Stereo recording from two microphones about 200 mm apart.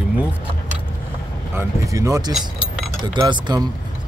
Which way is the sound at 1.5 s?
15° right (ahead or behind).